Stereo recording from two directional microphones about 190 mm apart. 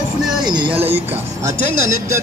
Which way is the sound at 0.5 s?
25° right (ahead or behind).